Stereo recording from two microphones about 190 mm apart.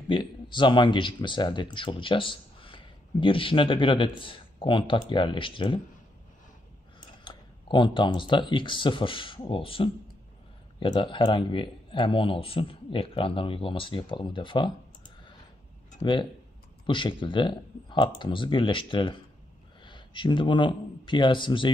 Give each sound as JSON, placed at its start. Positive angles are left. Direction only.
{"t": 0.1, "sound": "speech", "side_deg": 25}
{"t": 7.2, "sound": "speech", "side_deg": 25}
{"t": 16.0, "sound": "speech", "side_deg": 25}